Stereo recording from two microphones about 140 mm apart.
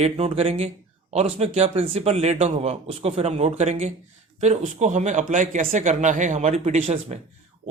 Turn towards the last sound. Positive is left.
turn(degrees=-50)  # may be behind; listen again after turning